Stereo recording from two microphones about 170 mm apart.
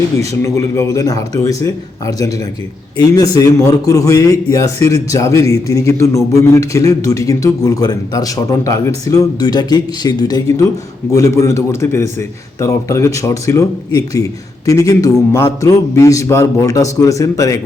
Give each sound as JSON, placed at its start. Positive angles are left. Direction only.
{"t": 0.4, "sound": "a man's voice", "side_deg": 20}